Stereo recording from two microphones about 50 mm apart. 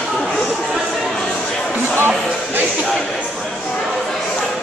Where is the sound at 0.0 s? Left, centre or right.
Centre.